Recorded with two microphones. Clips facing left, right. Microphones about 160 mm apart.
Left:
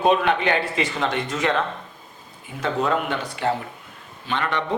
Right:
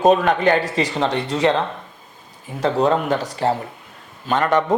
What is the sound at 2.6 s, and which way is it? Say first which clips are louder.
A man's voice: right 5 dB; 35° right (ahead or behind).